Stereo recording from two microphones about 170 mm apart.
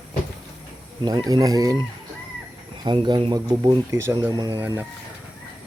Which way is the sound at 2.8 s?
25° right (ahead or behind).